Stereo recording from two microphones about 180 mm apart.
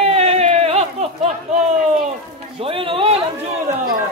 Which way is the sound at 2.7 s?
30° right (ahead or behind).